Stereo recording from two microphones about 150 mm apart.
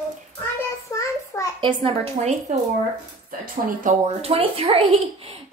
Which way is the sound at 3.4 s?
70° right (ahead or behind).